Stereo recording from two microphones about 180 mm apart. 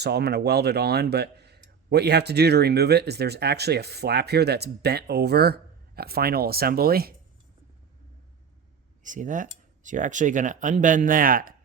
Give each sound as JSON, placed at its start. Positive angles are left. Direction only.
{"t": 0.0, "sound": "speech", "side_deg": -65}
{"t": 9.0, "sound": "speech", "side_deg": -45}